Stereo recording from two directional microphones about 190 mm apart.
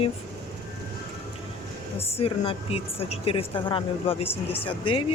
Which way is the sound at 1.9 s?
30° left (ahead or behind).